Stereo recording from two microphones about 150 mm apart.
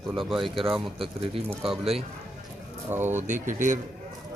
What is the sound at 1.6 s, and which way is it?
Speech, 40° right (ahead or behind).